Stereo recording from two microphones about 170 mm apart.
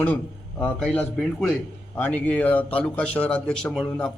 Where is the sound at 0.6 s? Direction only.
5° left (ahead or behind).